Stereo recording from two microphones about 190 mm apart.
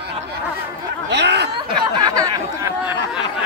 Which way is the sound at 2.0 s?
20° right (ahead or behind).